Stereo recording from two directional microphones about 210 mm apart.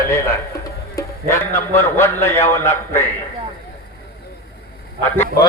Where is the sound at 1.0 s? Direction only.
10° left (ahead or behind).